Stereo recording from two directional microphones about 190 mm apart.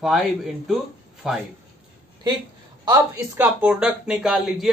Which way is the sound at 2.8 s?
10° right (ahead or behind).